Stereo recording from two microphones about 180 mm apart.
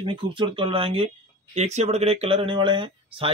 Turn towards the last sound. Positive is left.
turn(degrees=-30)  # may be behind; listen again after turning